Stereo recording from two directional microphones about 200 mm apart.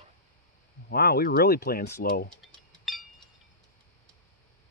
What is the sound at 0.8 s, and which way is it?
A man's voice, 50° left (ahead or behind).